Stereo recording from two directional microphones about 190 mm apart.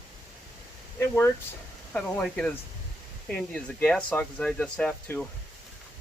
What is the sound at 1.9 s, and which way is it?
Speech, 5° left (ahead or behind).